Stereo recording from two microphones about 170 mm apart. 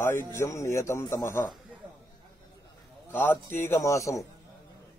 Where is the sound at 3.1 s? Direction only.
10° left (ahead or behind).